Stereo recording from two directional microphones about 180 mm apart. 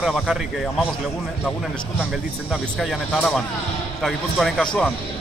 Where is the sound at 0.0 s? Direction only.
5° right (ahead or behind).